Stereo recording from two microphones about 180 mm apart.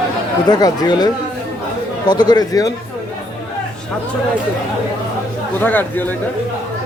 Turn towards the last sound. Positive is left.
turn(degrees=10)  # may be behind; listen again after turning